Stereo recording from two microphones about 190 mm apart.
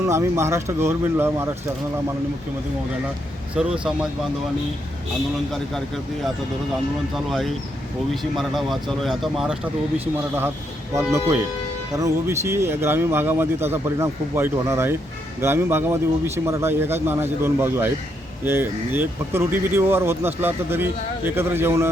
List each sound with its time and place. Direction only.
0.0 s speech: 15° right (ahead or behind)
3.5 s speech: 5° right (ahead or behind)
7.3 s speech: centre (ahead or behind)
10.9 s speech: 15° right (ahead or behind)